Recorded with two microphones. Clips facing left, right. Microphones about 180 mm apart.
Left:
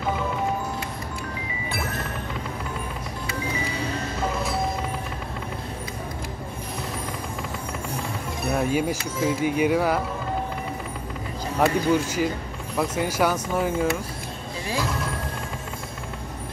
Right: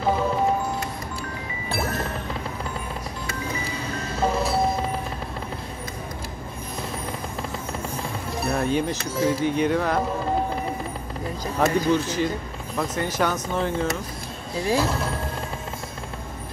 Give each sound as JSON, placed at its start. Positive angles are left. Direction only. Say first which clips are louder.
{"t": 8.5, "sound": "speech", "louder": "even", "side_deg": 10}
{"t": 11.6, "sound": "speech", "louder": "even", "side_deg": 10}
{"t": 14.8, "sound": "speech", "louder": "right 3 dB", "side_deg": -30}